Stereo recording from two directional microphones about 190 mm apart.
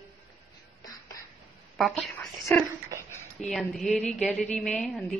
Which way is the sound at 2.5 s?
5° left (ahead or behind).